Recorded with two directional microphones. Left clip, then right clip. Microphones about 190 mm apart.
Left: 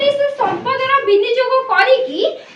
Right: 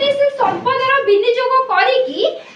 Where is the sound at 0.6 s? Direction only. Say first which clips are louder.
Even; 15° left (ahead or behind).